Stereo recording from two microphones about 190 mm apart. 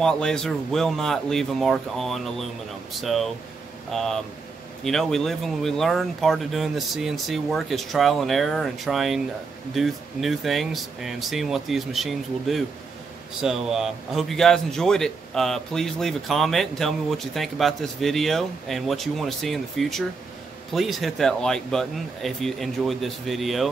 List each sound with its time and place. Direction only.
0.0 s a man's voice: 5° left (ahead or behind)